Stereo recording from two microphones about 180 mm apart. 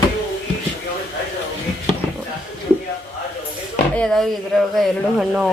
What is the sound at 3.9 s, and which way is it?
Speech, 5° left (ahead or behind).